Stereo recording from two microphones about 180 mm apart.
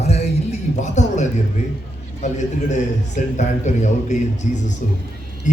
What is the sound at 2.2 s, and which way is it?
A man's voice, 40° left (ahead or behind).